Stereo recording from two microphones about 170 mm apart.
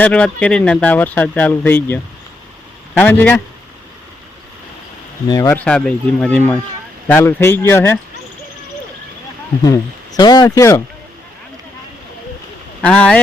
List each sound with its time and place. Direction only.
0.0 s speech: 5° left (ahead or behind)
3.0 s speech: 10° left (ahead or behind)
5.3 s speech: 20° left (ahead or behind)
5.5 s speech: 5° left (ahead or behind)
9.6 s speech: 20° left (ahead or behind)
12.8 s speech: 5° left (ahead or behind)